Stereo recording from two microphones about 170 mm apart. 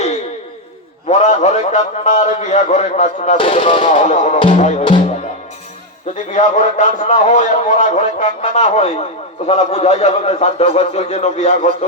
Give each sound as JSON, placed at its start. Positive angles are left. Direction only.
{"t": 1.2, "sound": "a man's voice", "side_deg": 45}
{"t": 3.3, "sound": "a man's voice", "side_deg": 30}
{"t": 4.4, "sound": "speech", "side_deg": 30}
{"t": 6.3, "sound": "a man's voice", "side_deg": 45}